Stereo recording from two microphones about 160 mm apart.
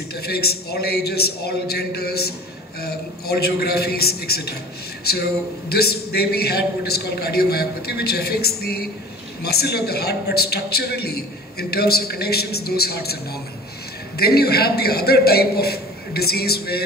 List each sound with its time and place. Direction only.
0.1 s a man's voice: 75° left (ahead or behind)